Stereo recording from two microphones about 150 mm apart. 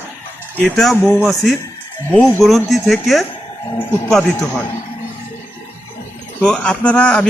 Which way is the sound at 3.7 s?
15° left (ahead or behind).